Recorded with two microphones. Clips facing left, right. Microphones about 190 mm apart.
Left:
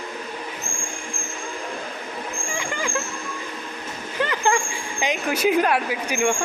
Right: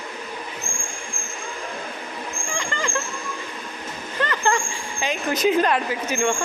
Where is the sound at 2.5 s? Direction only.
10° left (ahead or behind).